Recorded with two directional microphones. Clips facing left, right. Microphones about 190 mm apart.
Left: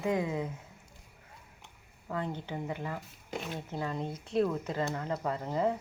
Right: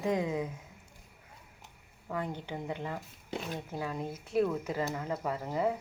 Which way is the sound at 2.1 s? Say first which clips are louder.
Left 1 dB; 15° right (ahead or behind).